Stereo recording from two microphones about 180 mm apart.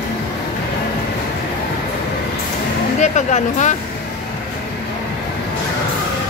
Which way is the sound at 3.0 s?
40° left (ahead or behind).